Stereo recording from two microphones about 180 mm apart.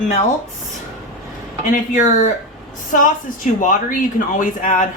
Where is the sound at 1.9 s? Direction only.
45° left (ahead or behind).